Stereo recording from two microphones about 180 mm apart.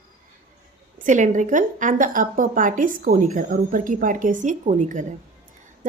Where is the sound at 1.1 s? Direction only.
45° right (ahead or behind).